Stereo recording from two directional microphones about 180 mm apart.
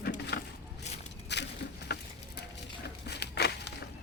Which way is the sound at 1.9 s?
60° left (ahead or behind).